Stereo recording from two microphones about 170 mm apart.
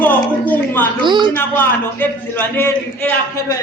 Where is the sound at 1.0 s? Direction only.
25° right (ahead or behind).